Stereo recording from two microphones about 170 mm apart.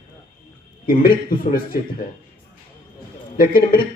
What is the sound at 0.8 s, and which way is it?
Speech, 60° left (ahead or behind).